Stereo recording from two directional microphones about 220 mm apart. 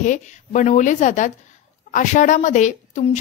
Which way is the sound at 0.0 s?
35° left (ahead or behind).